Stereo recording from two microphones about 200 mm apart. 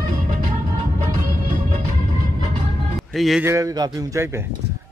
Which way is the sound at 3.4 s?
15° right (ahead or behind).